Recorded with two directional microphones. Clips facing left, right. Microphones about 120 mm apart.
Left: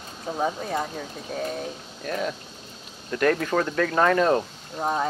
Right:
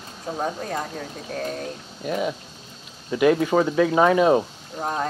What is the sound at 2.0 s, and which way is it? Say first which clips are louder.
Speech: right 3 dB; 10° right (ahead or behind).